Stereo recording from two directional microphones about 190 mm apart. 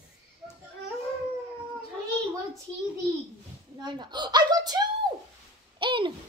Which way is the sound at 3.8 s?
25° right (ahead or behind).